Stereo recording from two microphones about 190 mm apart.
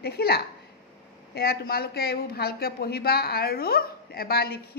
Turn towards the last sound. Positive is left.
turn(degrees=55)  # may be behind; listen again after turning